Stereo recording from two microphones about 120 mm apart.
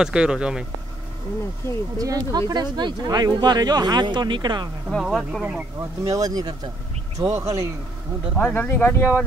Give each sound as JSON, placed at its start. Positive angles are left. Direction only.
{"t": 0.0, "sound": "speech", "side_deg": -5}
{"t": 2.0, "sound": "speech", "side_deg": -30}
{"t": 4.9, "sound": "speech", "side_deg": 0}
{"t": 5.8, "sound": "speech", "side_deg": -30}
{"t": 8.4, "sound": "speech", "side_deg": 15}